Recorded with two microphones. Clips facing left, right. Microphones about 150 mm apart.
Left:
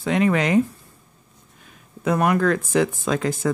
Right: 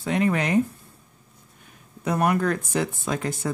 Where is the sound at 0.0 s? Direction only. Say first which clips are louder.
Left 3 dB; 90° left.